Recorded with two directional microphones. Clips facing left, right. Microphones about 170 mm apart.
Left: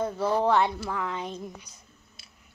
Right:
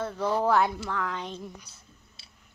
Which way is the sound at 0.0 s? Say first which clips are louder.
Left 2 dB; 10° left (ahead or behind).